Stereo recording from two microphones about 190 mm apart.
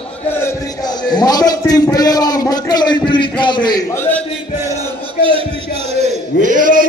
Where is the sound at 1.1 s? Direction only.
20° left (ahead or behind).